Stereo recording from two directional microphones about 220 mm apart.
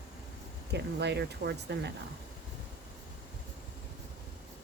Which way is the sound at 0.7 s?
50° right (ahead or behind).